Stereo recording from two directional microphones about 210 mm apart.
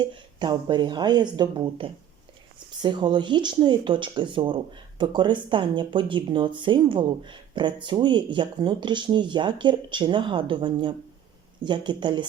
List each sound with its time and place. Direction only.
0.0 s speech: 20° right (ahead or behind)